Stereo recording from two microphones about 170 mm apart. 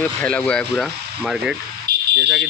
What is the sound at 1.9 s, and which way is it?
Fire alarm, 65° right (ahead or behind).